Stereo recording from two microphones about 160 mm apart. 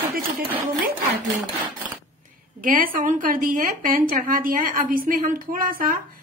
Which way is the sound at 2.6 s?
60° right (ahead or behind).